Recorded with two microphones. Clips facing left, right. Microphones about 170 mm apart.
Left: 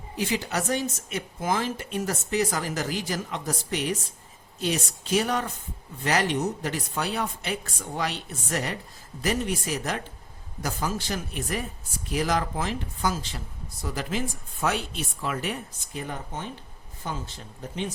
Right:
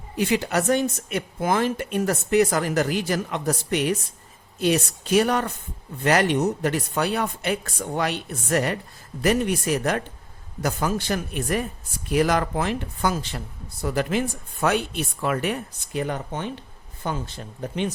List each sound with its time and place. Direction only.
0.2 s a woman's voice: 60° right (ahead or behind)